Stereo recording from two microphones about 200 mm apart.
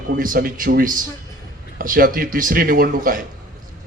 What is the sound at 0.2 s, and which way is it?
A man's voice, 45° right (ahead or behind).